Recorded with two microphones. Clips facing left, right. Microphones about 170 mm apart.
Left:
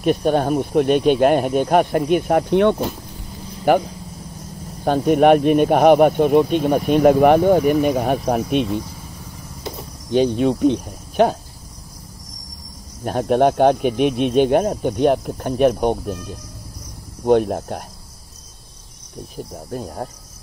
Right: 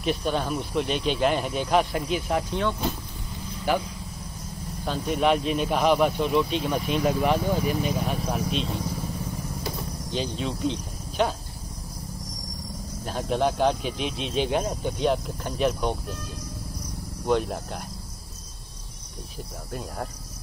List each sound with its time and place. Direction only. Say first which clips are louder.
0.0 s speech: left 9 dB; 50° left (ahead or behind)
4.8 s speech: left 10 dB; 55° left (ahead or behind)
10.1 s speech: left 13 dB; 55° left (ahead or behind)
13.0 s speech: left 9 dB; 55° left (ahead or behind)
17.2 s speech: left 9 dB; 50° left (ahead or behind)
19.3 s cricket: left 7 dB; 40° left (ahead or behind)